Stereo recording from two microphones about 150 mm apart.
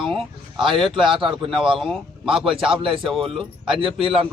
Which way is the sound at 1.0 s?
35° right (ahead or behind).